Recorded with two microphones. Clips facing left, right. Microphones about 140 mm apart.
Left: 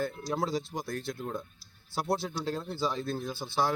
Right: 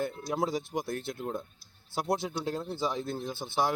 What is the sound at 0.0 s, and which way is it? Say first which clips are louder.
Speech: right 1 dB; 20° right (ahead or behind).